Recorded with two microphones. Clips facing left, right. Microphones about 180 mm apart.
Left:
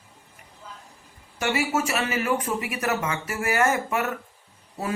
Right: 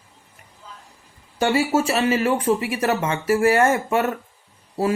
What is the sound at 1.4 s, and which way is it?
Speech, 30° right (ahead or behind).